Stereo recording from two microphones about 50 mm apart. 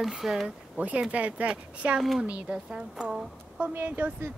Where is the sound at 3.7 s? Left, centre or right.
Right.